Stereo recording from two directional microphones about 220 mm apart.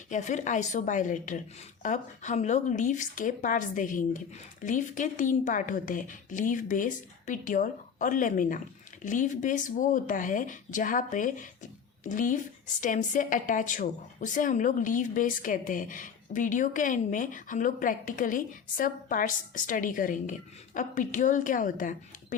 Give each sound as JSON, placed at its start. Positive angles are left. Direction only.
{"t": 0.1, "sound": "speech", "side_deg": 35}